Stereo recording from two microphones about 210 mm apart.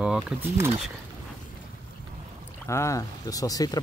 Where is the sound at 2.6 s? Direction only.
15° left (ahead or behind).